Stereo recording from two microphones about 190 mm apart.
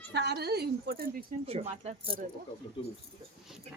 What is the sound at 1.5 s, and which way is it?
Speech, 35° right (ahead or behind).